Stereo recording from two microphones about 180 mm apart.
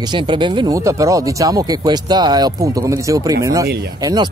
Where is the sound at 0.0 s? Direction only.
25° right (ahead or behind).